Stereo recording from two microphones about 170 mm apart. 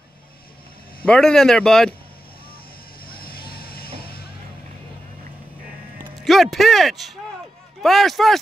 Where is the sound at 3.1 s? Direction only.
60° left (ahead or behind).